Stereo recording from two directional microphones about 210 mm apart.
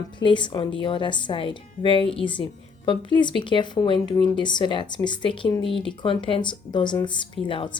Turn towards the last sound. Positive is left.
turn(degrees=25)  # may be behind; listen again after turning